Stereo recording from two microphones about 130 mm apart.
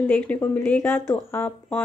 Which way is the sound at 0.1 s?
15° left (ahead or behind).